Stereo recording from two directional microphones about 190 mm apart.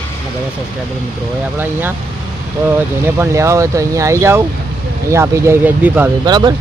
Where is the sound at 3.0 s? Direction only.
15° right (ahead or behind).